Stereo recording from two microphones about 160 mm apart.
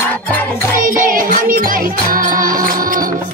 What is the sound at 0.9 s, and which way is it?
Music, 60° right (ahead or behind).